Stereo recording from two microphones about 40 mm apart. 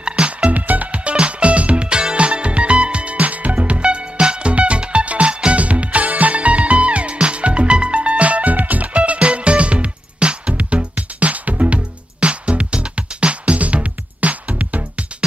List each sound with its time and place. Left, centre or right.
0.0 s music: right
0.5 s music: right